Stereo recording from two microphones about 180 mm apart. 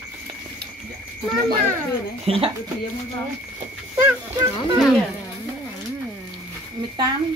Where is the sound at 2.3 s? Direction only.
30° right (ahead or behind).